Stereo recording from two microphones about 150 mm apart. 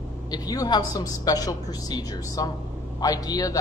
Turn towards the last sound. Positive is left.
turn(degrees=25)  # may be behind; listen again after turning